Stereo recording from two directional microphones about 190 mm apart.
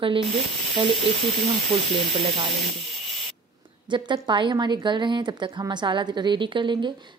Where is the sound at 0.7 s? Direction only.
25° right (ahead or behind).